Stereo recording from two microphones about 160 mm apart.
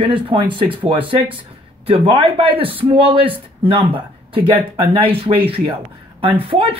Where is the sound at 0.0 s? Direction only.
35° right (ahead or behind).